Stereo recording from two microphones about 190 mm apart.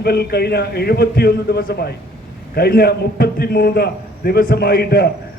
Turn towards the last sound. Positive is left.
turn(degrees=55)  # may be behind; listen again after turning